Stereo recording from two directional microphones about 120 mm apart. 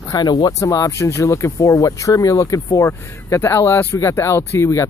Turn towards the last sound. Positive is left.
turn(degrees=25)  # may be behind; listen again after turning